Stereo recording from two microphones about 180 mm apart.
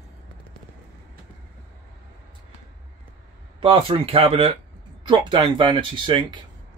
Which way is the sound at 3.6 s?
30° right (ahead or behind).